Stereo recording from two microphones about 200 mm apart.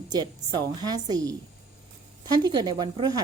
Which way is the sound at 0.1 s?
20° right (ahead or behind).